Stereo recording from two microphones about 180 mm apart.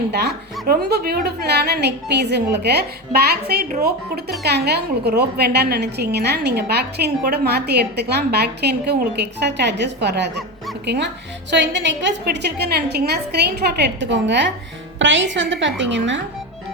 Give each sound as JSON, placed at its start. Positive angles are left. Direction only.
{"t": 0.1, "sound": "a woman's voice", "side_deg": -65}